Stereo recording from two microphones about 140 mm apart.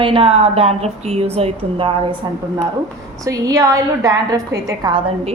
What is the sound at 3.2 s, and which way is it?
A woman's voice, 25° right (ahead or behind).